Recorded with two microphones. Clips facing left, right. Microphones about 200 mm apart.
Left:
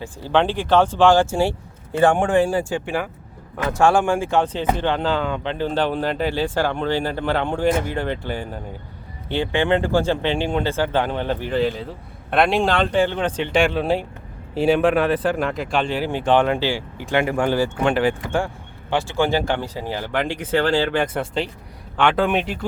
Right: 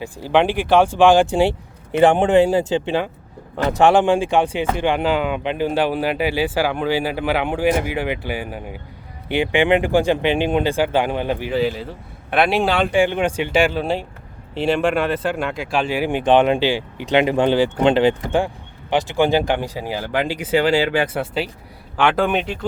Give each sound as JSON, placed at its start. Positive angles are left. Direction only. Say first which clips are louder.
{"t": 0.0, "sound": "speech", "louder": "right 2 dB", "side_deg": -15}